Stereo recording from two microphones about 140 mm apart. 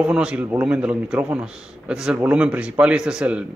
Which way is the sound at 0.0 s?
5° right (ahead or behind).